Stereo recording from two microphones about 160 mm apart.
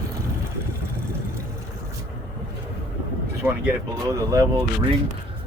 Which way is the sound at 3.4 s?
10° right (ahead or behind).